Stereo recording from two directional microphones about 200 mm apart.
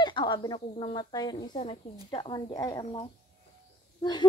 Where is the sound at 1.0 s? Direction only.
20° left (ahead or behind).